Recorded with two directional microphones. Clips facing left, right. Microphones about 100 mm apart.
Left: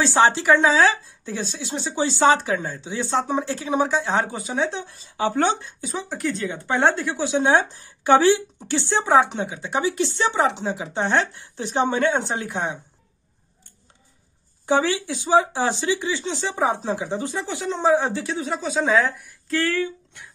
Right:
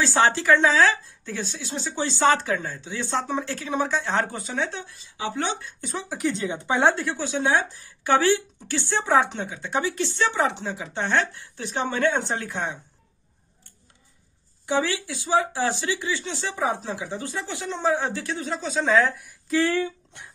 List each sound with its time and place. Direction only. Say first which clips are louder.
0.0 s speech: left 3 dB; 20° left (ahead or behind)
5.1 s speech: left 7 dB; 50° left (ahead or behind)
5.5 s speech: left 6 dB; 25° left (ahead or behind)
5.8 s speech: left 2 dB; centre (ahead or behind)
6.1 s speech: right 1 dB; 20° right (ahead or behind)
6.8 s speech: left 1 dB; centre (ahead or behind)
7.2 s speech: left 4 dB; 20° left (ahead or behind)
14.7 s speech: left 4 dB; 25° left (ahead or behind)
18.7 s speech: even; 5° left (ahead or behind)
19.6 s speech: even; 20° right (ahead or behind)